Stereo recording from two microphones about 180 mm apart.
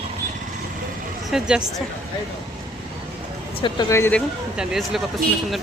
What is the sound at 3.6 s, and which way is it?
Speech, 20° left (ahead or behind).